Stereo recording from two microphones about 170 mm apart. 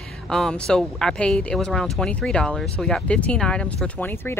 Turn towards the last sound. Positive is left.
turn(degrees=10)  # may be behind; listen again after turning